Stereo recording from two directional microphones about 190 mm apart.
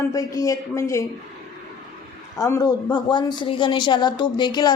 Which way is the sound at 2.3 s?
15° left (ahead or behind).